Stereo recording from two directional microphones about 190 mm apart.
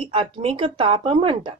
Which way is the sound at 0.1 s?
30° right (ahead or behind).